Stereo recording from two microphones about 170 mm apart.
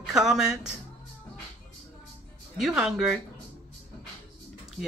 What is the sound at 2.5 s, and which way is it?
Speech, centre (ahead or behind).